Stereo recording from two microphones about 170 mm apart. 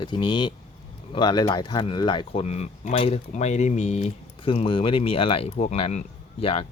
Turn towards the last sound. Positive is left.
turn(degrees=35)  # may be behind; listen again after turning